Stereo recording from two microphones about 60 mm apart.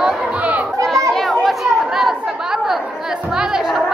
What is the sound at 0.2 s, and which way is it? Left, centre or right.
Children playing, centre.